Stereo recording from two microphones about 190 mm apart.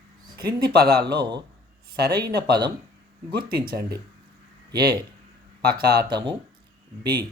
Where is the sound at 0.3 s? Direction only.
55° right (ahead or behind).